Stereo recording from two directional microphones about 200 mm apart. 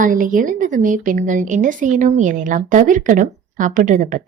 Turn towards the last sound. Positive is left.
turn(degrees=-40)  # may be behind; listen again after turning